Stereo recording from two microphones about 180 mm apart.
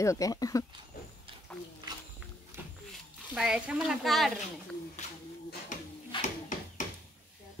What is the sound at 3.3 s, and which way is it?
Speech, 5° right (ahead or behind).